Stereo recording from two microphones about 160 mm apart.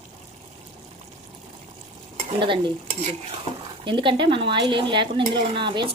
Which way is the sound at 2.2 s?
30° right (ahead or behind).